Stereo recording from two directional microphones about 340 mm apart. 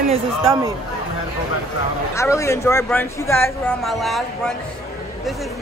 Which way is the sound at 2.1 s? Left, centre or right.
Centre.